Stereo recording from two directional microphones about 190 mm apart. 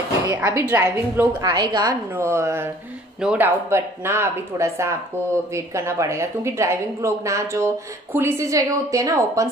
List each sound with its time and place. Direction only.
0.3 s a woman's voice: 15° right (ahead or behind)